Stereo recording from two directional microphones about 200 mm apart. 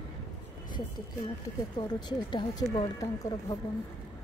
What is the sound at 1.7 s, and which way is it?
Speech, 20° left (ahead or behind).